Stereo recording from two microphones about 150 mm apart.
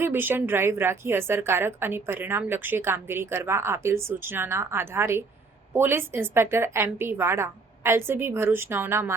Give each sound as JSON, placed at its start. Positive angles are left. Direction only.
{"t": 0.0, "sound": "a woman's voice", "side_deg": -15}